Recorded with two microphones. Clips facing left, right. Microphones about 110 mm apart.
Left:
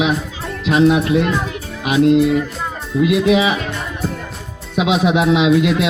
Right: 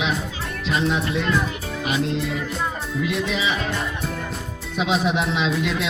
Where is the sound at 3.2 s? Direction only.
70° left (ahead or behind).